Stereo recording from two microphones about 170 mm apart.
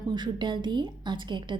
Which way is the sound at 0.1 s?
25° right (ahead or behind).